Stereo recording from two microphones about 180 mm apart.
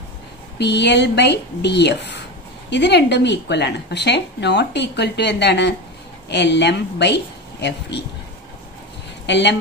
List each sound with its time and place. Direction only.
0.6 s speech: 70° left (ahead or behind)
9.2 s speech: 70° left (ahead or behind)